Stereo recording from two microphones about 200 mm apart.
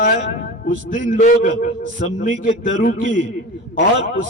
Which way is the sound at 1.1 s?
40° left (ahead or behind).